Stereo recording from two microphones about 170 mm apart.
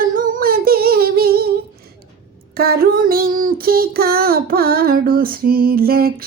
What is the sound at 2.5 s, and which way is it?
Child singing, 65° right (ahead or behind).